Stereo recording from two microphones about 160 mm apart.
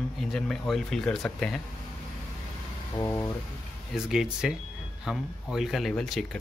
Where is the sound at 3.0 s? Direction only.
15° left (ahead or behind).